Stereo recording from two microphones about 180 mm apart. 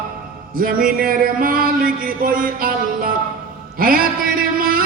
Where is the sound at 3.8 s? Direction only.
55° right (ahead or behind).